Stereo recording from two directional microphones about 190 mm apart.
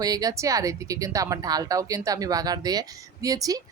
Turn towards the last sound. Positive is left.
turn(degrees=-20)  # may be behind; listen again after turning